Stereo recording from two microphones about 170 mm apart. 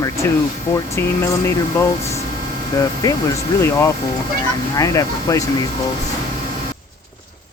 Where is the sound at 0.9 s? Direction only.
15° left (ahead or behind).